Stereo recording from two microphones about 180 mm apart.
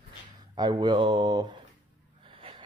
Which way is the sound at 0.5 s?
25° right (ahead or behind).